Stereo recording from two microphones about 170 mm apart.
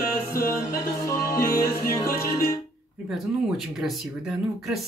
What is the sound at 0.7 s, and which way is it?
Music, 20° left (ahead or behind).